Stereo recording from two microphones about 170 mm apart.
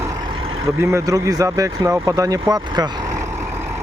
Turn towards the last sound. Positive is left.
turn(degrees=-20)  # may be behind; listen again after turning